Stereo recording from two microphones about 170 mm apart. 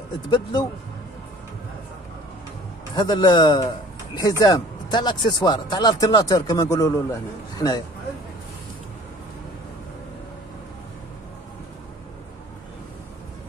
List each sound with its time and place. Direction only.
0.3 s speech: 25° left (ahead or behind)
2.9 s speech: 25° left (ahead or behind)